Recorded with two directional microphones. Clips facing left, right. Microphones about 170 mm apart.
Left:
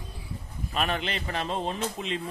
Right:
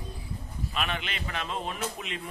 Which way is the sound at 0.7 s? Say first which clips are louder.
Left 5 dB; 40° left (ahead or behind).